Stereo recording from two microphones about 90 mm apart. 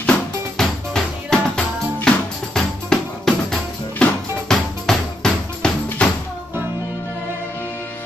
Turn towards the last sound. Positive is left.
turn(degrees=10)  # may be behind; listen again after turning